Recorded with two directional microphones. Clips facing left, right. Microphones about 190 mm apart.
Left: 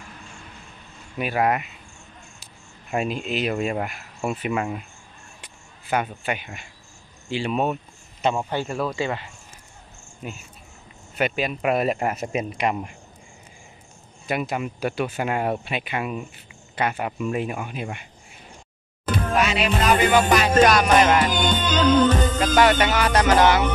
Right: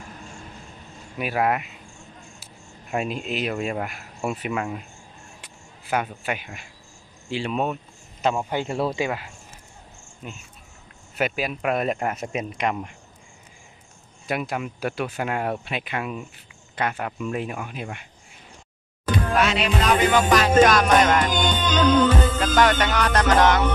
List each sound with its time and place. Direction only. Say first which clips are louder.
1.1 s speech: left 1 dB; centre (ahead or behind)
5.4 s a sound: right 1 dB; centre (ahead or behind)
7.2 s speech: left 2 dB; centre (ahead or behind)
8.5 s speech: right 1 dB; 15° right (ahead or behind)
10.2 s music: left 3 dB; 5° left (ahead or behind)
11.1 s speech: left 1 dB; centre (ahead or behind)
14.2 s speech: left 1 dB; centre (ahead or behind)
19.3 s speech: left 1 dB; 5° left (ahead or behind)
21.5 s music: left 1 dB; 10° left (ahead or behind)